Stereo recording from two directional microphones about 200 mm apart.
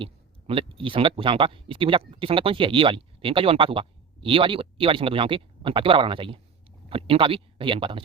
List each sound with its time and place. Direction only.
0.0 s speech: 25° right (ahead or behind)